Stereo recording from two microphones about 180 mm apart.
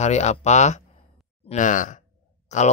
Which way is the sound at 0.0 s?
40° left (ahead or behind).